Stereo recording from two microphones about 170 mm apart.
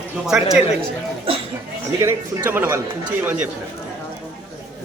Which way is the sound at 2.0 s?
15° right (ahead or behind).